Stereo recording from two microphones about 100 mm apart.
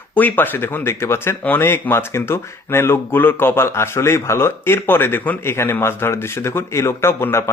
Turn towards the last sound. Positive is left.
turn(degrees=25)  # may be behind; listen again after turning